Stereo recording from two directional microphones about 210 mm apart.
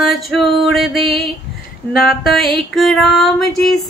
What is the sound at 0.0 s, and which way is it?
Male singing, centre (ahead or behind).